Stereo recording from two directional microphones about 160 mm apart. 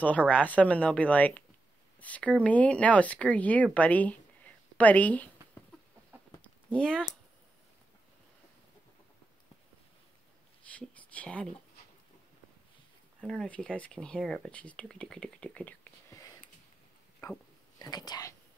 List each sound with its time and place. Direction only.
0.3 s speech: 10° left (ahead or behind)
4.7 s a sound: 10° left (ahead or behind)
10.8 s speech: 10° left (ahead or behind)
13.3 s speech: 5° left (ahead or behind); by 18.3 s 25° left (ahead or behind)